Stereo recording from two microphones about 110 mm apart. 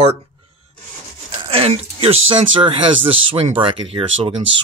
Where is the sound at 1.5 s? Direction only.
60° right (ahead or behind).